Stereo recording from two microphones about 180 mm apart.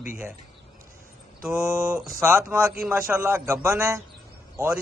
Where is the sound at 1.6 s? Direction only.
15° right (ahead or behind).